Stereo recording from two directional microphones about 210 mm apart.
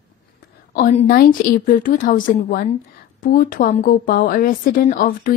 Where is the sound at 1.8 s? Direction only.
40° left (ahead or behind).